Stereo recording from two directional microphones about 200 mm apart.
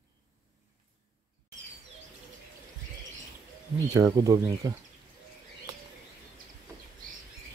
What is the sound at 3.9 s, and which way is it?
Speech, 20° right (ahead or behind).